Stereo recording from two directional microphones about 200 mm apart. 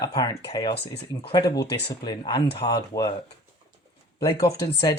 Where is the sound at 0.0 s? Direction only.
20° left (ahead or behind).